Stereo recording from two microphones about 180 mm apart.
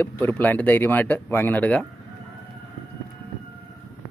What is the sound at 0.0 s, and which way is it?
Speech, 10° left (ahead or behind).